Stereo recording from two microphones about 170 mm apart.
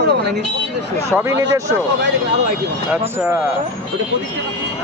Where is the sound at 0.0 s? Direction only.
80° right.